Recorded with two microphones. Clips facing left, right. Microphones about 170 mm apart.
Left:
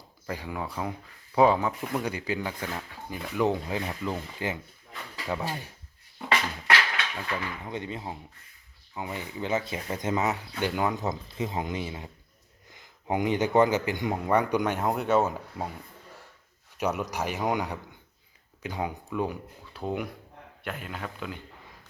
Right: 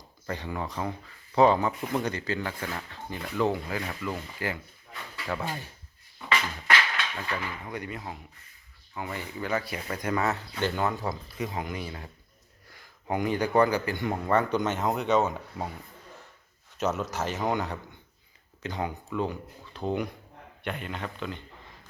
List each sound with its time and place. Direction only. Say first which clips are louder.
0.3 s speech: right 1 dB; 5° left (ahead or behind)
7.2 s speech: left 1 dB; 5° left (ahead or behind)
7.7 s speech: left 2 dB; 25° left (ahead or behind); by 15.7 s 5° left (ahead or behind)
16.7 s speech: even; 15° left (ahead or behind)